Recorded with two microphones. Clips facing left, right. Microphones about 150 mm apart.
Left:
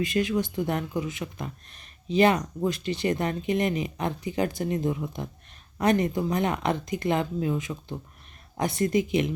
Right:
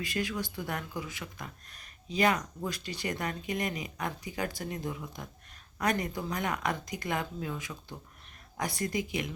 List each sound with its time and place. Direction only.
0.0 s speech: 20° left (ahead or behind)